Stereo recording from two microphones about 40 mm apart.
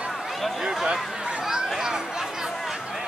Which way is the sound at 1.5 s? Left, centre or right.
Centre.